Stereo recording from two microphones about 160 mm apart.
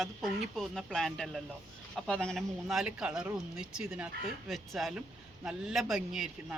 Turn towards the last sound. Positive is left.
turn(degrees=0)  # may be behind; listen again after turning